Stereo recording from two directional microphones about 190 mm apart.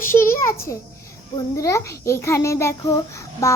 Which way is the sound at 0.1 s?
15° left (ahead or behind).